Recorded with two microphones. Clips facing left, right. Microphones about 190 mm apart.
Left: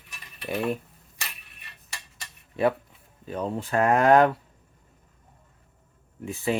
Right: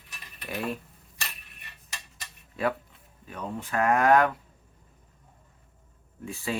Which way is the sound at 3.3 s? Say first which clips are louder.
Left 6 dB; 30° left (ahead or behind).